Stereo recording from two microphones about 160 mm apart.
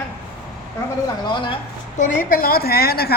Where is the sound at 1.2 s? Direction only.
30° left (ahead or behind).